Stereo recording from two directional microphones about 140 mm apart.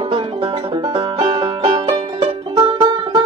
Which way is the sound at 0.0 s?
40° right (ahead or behind).